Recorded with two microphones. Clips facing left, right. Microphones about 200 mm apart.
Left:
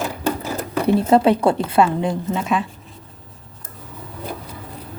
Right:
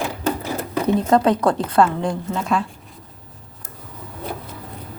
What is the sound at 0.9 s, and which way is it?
A woman's voice, 10° left (ahead or behind).